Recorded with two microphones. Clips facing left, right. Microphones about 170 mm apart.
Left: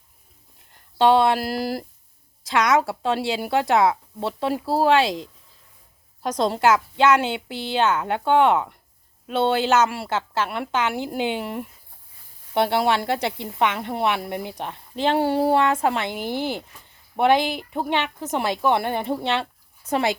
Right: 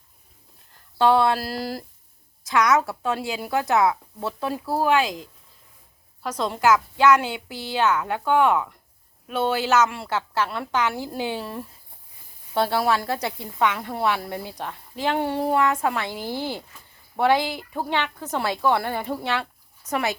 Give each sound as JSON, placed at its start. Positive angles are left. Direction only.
{"t": 0.9, "sound": "speech", "side_deg": 20}
{"t": 6.2, "sound": "speech", "side_deg": 35}